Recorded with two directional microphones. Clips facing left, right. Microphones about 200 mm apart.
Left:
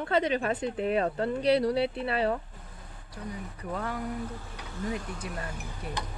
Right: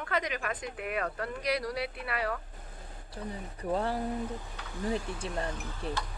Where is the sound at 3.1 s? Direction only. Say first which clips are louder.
Left 1 dB; 30° right (ahead or behind).